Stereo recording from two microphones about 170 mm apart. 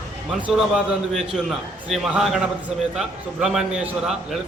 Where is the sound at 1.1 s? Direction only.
Centre (ahead or behind).